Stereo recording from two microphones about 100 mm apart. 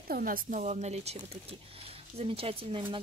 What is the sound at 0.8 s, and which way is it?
Speech, 90° right.